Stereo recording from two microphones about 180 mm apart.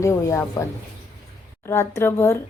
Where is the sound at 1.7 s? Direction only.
15° left (ahead or behind).